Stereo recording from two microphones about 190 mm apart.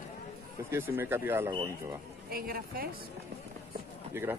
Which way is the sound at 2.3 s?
55° right (ahead or behind).